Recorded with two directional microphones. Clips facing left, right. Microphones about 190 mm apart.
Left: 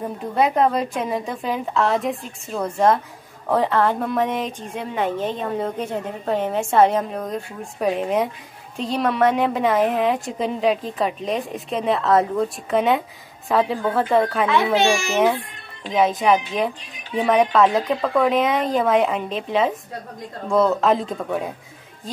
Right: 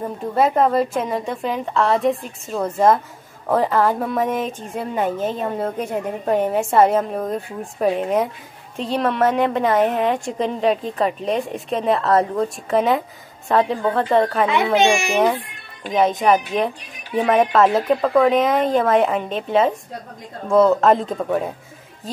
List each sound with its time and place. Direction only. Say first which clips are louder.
0.4 s a woman's voice: right 2 dB; centre (ahead or behind)
14.5 s a child's voice: even; 15° right (ahead or behind)
15.8 s a woman's voice: right 1 dB; centre (ahead or behind)